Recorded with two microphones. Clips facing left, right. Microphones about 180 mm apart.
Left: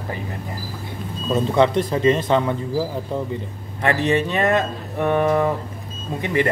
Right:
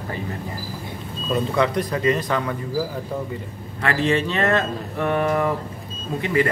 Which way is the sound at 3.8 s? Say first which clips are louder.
Left 2 dB; 20° left (ahead or behind).